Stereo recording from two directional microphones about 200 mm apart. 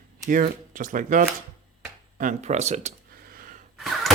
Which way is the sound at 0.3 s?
45° right (ahead or behind).